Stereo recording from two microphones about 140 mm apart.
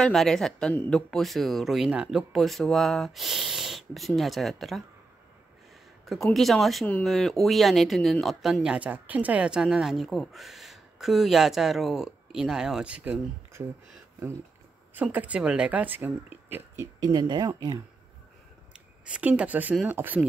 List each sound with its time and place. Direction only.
0.0 s speech: centre (ahead or behind)
6.0 s speech: centre (ahead or behind)
15.0 s speech: 10° right (ahead or behind); by 17.5 s 30° right (ahead or behind)
19.0 s speech: 10° right (ahead or behind)